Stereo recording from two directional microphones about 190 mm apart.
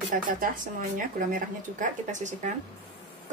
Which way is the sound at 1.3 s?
40° right (ahead or behind).